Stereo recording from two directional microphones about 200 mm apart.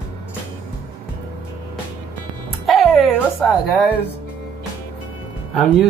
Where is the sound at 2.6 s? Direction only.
Centre (ahead or behind).